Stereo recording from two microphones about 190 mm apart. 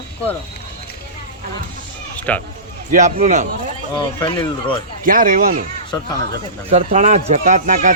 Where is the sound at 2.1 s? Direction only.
5° left (ahead or behind).